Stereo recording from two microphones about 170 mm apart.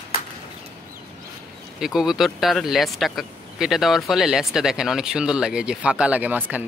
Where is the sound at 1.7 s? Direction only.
Centre (ahead or behind).